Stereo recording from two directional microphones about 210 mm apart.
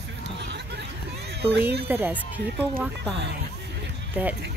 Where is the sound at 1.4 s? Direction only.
50° right (ahead or behind).